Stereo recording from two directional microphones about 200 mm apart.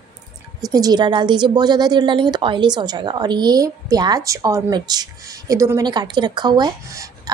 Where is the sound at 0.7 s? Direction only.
20° right (ahead or behind).